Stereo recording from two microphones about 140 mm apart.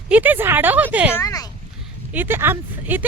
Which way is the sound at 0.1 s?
15° right (ahead or behind).